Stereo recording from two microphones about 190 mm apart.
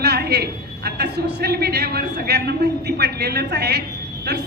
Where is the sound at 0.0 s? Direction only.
60° right (ahead or behind).